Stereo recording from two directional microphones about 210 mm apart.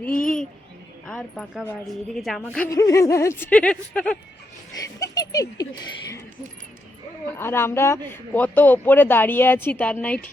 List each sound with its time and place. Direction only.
1.0 s a woman's voice: centre (ahead or behind)
4.8 s speech: 15° left (ahead or behind)
7.3 s speech: 10° left (ahead or behind)